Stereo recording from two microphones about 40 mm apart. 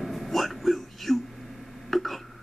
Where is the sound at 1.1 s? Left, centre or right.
Centre.